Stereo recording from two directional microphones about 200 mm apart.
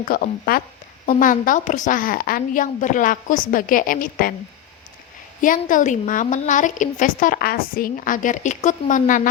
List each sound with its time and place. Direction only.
0.0 s a woman's voice: 45° left (ahead or behind)
5.4 s a woman's voice: 40° left (ahead or behind)